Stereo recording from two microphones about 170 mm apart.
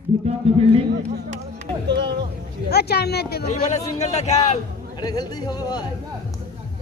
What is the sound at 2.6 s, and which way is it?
Speech, 70° left (ahead or behind).